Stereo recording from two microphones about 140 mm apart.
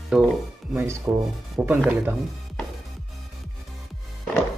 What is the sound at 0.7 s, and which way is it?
Rub, 20° right (ahead or behind).